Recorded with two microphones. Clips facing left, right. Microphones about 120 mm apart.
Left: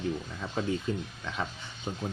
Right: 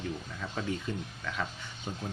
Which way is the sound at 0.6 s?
30° left (ahead or behind).